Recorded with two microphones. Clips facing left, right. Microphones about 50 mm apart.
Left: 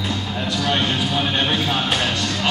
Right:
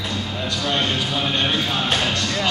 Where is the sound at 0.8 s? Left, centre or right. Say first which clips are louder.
Left 1 dB; centre.